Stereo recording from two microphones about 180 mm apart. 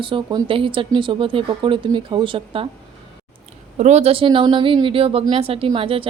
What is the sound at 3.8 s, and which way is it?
A woman's voice, 40° right (ahead or behind).